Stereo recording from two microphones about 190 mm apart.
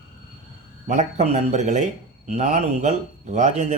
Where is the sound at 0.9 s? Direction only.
35° right (ahead or behind).